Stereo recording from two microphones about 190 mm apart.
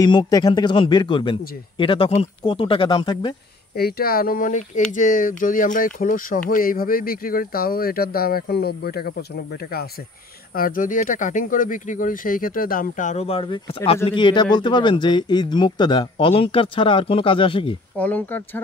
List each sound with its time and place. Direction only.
0.0 s speech: 20° left (ahead or behind)
3.7 s speech: 55° left (ahead or behind); by 17.7 s 25° left (ahead or behind)
17.9 s speech: 10° left (ahead or behind)